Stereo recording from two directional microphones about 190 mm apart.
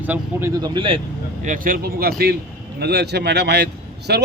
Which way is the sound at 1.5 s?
45° right (ahead or behind).